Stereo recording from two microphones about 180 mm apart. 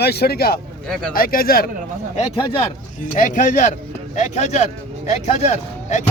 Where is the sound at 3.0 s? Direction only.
45° left (ahead or behind).